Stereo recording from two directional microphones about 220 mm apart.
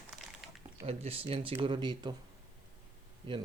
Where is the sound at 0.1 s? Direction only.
Centre (ahead or behind).